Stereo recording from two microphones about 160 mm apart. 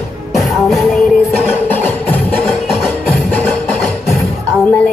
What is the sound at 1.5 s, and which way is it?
Music, 10° left (ahead or behind).